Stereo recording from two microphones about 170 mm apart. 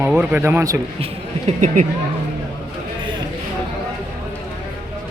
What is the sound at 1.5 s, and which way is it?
Speech, 45° right (ahead or behind).